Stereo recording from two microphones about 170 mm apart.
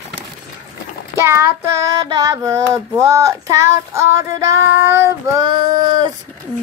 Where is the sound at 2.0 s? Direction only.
20° right (ahead or behind).